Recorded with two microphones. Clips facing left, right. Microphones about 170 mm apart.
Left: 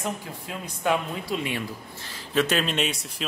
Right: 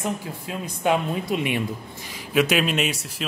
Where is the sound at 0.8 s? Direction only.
20° right (ahead or behind); by 3.2 s 5° right (ahead or behind).